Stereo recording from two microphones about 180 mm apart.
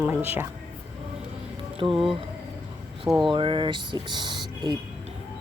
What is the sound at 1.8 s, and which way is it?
Speech, 25° right (ahead or behind).